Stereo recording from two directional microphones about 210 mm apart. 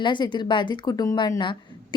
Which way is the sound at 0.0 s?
20° left (ahead or behind).